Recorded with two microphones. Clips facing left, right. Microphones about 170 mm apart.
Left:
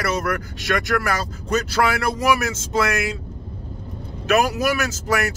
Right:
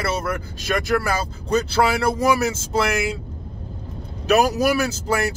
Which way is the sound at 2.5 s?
30° right (ahead or behind).